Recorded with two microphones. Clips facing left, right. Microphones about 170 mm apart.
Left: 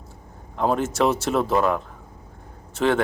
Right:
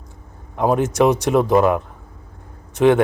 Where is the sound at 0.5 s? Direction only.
15° right (ahead or behind).